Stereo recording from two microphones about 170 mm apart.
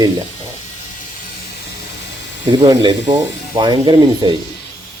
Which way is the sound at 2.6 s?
25° right (ahead or behind).